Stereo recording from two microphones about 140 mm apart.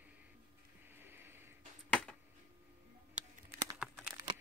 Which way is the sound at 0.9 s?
15° right (ahead or behind).